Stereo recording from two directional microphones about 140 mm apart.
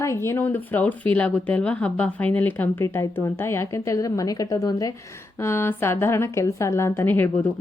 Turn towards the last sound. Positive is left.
turn(degrees=15)  # may be behind; listen again after turning